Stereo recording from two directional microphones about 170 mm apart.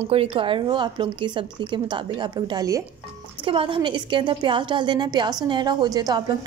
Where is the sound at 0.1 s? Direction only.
35° right (ahead or behind).